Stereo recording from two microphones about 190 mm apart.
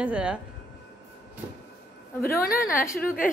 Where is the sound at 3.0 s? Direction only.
50° left (ahead or behind).